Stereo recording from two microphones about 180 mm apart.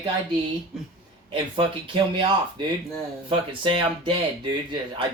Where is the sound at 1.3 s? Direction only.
30° right (ahead or behind).